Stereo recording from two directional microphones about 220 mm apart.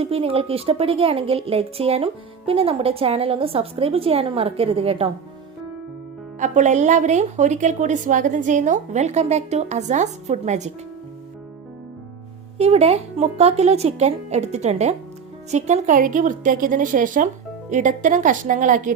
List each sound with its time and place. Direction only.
0.0 s a woman's voice: 25° right (ahead or behind)
6.4 s a woman's voice: 35° right (ahead or behind)
12.5 s a woman's voice: 30° right (ahead or behind)